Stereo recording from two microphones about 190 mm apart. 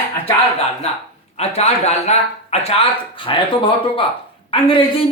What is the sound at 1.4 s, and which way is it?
Speech, 35° left (ahead or behind).